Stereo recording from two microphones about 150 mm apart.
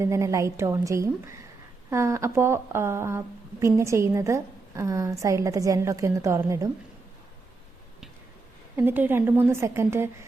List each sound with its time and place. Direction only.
0.0 s a woman's voice: 20° right (ahead or behind)
8.7 s a woman's voice: 15° right (ahead or behind)